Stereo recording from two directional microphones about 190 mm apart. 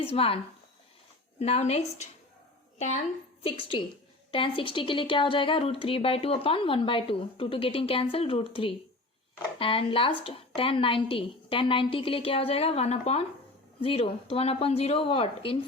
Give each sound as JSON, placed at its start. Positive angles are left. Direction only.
{"t": 0.0, "sound": "speech", "side_deg": 30}
{"t": 1.4, "sound": "a woman's voice", "side_deg": 35}